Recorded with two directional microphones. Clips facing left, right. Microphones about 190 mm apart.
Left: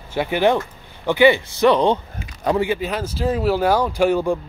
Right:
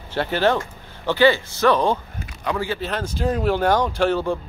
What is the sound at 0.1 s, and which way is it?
Speech, 15° left (ahead or behind).